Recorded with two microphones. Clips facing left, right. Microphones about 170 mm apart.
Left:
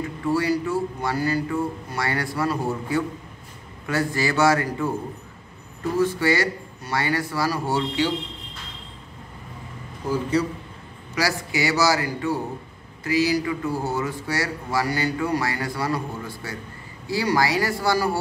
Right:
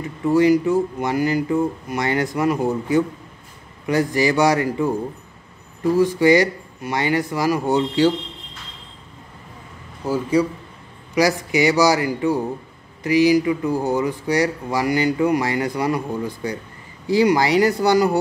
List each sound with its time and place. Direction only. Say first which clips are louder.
0.3 s speech: right 7 dB; 15° right (ahead or behind)
5.9 s speech: right 6 dB; 15° right (ahead or behind)
10.3 s speech: right 4 dB; 10° right (ahead or behind)